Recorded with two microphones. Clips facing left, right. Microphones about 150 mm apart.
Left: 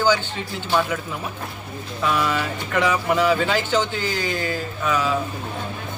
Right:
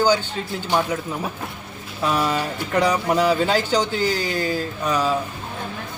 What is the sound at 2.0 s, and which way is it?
Speech, 40° right (ahead or behind).